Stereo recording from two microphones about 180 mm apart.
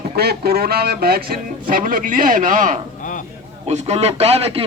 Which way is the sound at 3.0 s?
45° left (ahead or behind).